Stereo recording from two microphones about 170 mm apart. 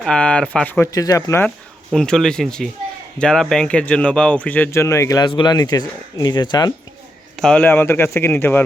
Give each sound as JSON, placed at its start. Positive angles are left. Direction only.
{"t": 0.0, "sound": "speech", "side_deg": 5}
{"t": 0.9, "sound": "speech", "side_deg": 20}
{"t": 1.5, "sound": "speech", "side_deg": 5}
{"t": 7.3, "sound": "speech", "side_deg": 5}